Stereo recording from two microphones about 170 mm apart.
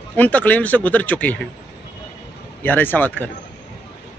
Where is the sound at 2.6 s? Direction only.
10° left (ahead or behind).